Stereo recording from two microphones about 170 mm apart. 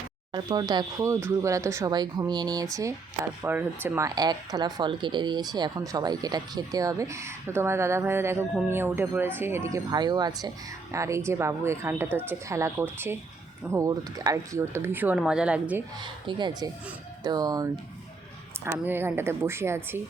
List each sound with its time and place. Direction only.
0.3 s speech: 25° right (ahead or behind); by 15.8 s 5° right (ahead or behind)
16.0 s speech: 25° right (ahead or behind)